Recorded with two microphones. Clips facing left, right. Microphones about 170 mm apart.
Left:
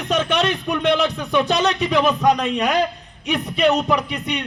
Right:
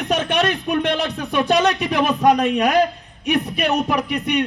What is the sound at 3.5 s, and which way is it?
Speech, 60° right (ahead or behind).